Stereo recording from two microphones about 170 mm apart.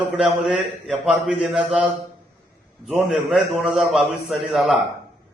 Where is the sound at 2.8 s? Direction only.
Centre (ahead or behind).